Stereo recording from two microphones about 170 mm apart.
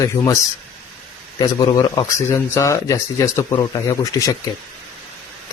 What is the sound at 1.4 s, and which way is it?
Speech, 25° left (ahead or behind).